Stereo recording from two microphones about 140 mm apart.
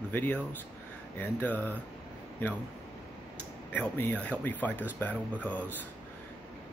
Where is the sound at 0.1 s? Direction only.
10° left (ahead or behind).